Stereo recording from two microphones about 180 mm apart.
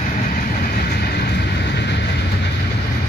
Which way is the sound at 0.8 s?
60° left (ahead or behind).